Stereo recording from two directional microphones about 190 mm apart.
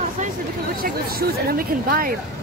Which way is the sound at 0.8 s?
50° right (ahead or behind).